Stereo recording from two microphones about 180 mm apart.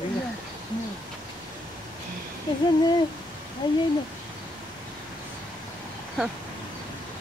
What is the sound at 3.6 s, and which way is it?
Speech, 25° left (ahead or behind).